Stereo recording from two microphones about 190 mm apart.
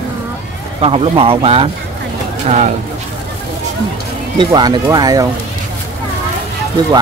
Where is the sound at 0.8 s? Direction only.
30° right (ahead or behind).